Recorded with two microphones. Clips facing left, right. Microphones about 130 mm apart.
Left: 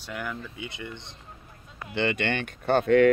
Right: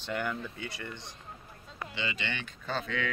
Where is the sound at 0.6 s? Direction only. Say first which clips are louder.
Left 3 dB; 20° left (ahead or behind).